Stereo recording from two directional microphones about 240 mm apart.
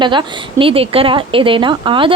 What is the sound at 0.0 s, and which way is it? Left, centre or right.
Speech, centre.